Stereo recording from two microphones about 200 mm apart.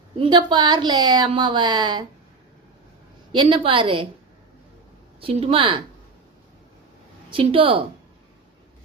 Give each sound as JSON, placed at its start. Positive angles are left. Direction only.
{"t": 0.2, "sound": "a woman's voice", "side_deg": -25}
{"t": 3.3, "sound": "a woman's voice", "side_deg": -25}
{"t": 5.2, "sound": "a woman's voice", "side_deg": -30}
{"t": 7.3, "sound": "a woman's voice", "side_deg": -25}